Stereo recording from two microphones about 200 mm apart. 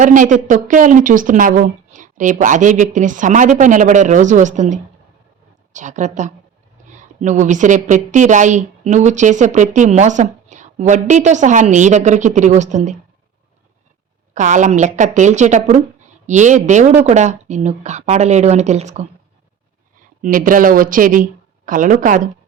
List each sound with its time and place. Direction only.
0.0 s a woman's voice: 40° right (ahead or behind)
14.3 s a woman's voice: 35° right (ahead or behind)
20.2 s a woman's voice: 40° right (ahead or behind)